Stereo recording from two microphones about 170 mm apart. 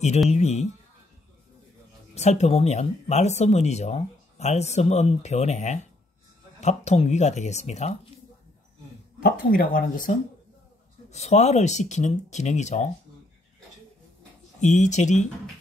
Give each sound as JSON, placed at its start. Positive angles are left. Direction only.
{"t": 0.3, "sound": "speech", "side_deg": 40}
{"t": 2.1, "sound": "speech", "side_deg": 40}
{"t": 9.2, "sound": "speech", "side_deg": 60}
{"t": 11.1, "sound": "speech", "side_deg": 40}
{"t": 14.6, "sound": "speech", "side_deg": 45}